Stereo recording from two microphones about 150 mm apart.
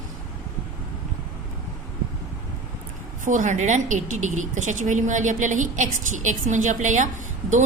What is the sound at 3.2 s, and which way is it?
A woman's voice, 55° right (ahead or behind).